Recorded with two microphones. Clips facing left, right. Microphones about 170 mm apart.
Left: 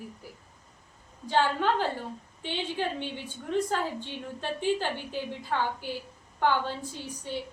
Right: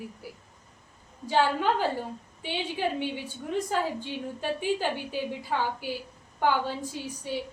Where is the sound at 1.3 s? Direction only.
10° right (ahead or behind).